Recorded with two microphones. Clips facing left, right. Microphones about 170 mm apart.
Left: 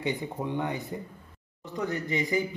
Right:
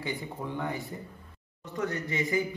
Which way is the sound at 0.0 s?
20° left (ahead or behind).